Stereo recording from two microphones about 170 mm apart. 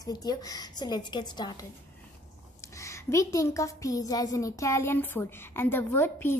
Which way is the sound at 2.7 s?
15° left (ahead or behind).